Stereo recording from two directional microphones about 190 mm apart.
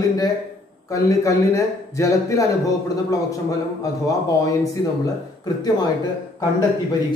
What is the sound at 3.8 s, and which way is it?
Speech, 15° left (ahead or behind).